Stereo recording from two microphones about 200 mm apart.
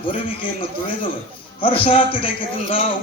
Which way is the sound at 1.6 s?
25° left (ahead or behind).